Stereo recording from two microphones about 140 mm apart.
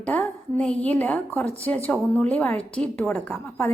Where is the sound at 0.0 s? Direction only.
10° left (ahead or behind).